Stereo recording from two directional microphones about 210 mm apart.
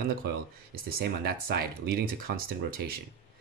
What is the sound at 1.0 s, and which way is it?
Speech, 50° right (ahead or behind).